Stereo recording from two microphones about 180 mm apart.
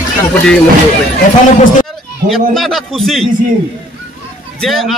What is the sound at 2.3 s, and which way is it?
Speech, centre (ahead or behind).